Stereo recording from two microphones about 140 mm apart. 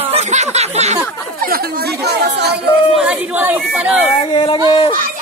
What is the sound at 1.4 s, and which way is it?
Chatter, 90° right.